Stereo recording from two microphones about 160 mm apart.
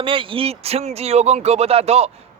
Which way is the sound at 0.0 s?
35° right (ahead or behind).